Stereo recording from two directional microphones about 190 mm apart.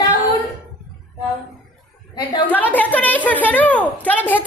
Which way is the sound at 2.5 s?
10° left (ahead or behind).